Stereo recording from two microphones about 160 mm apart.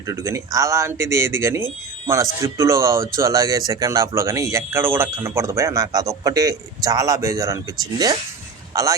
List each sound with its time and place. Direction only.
0.1 s a man's voice: 20° right (ahead or behind)